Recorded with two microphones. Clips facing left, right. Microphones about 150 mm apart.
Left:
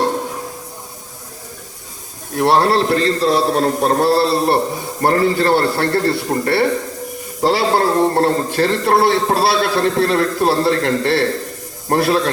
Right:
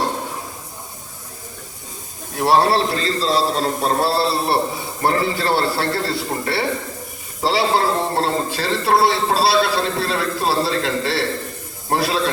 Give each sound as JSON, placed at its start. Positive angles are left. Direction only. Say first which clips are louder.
{"t": 2.4, "sound": "a man's voice", "louder": "left 2 dB", "side_deg": 60}